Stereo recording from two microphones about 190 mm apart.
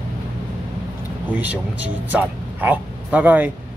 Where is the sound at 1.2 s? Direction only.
10° right (ahead or behind).